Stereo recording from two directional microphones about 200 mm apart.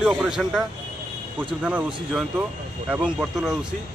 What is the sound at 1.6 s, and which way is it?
Speech, 5° right (ahead or behind).